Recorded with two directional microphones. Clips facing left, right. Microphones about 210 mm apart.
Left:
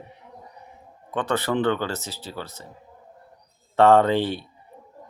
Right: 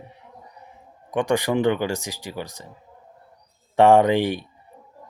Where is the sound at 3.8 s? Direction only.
15° right (ahead or behind).